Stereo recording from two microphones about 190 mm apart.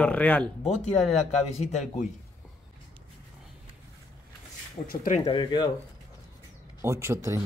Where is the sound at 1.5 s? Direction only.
40° left (ahead or behind).